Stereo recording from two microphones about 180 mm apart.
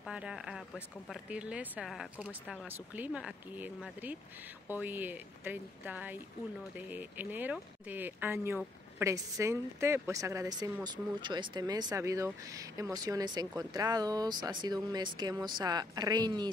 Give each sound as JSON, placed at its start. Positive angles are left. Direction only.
{"t": 0.0, "sound": "a woman's voice", "side_deg": -5}